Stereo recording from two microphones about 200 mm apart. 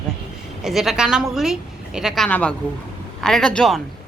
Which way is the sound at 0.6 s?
Centre (ahead or behind).